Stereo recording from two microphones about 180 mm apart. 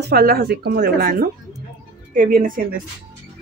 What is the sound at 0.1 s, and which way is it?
Speech, 60° right (ahead or behind).